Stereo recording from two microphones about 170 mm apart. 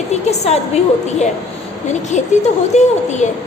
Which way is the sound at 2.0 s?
40° left (ahead or behind).